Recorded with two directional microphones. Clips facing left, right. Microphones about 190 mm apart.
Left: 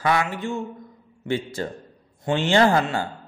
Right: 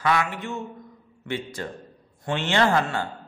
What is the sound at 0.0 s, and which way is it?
A man's voice, 35° left (ahead or behind).